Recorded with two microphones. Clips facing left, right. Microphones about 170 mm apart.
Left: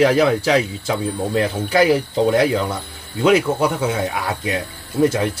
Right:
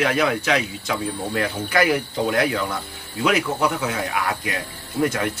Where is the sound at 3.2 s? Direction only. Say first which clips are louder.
Left 5 dB; 25° left (ahead or behind).